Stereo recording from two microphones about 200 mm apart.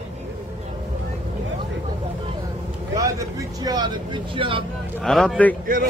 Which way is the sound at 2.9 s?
15° right (ahead or behind).